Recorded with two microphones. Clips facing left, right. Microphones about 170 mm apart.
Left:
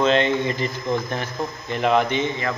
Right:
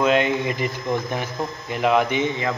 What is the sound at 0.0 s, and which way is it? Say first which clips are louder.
Speech: even; 10° right (ahead or behind).